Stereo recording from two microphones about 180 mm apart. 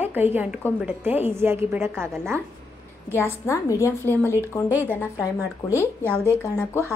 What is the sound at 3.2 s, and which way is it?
Speech, 15° left (ahead or behind).